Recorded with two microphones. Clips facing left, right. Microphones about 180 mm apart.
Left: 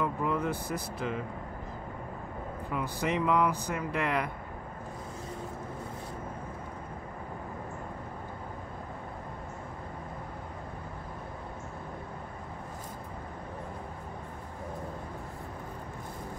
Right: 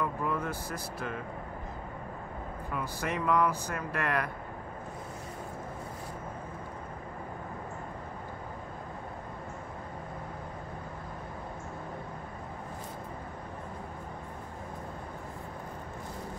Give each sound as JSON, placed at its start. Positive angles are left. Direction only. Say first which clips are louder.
{"t": 0.0, "sound": "speech", "louder": "left 2 dB", "side_deg": 15}
{"t": 2.7, "sound": "speech", "louder": "left 3 dB", "side_deg": 15}